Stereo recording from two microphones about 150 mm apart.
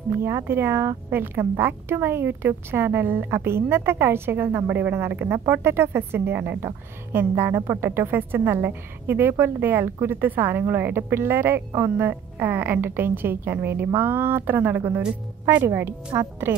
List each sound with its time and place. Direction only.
0.2 s a woman's voice: 15° right (ahead or behind)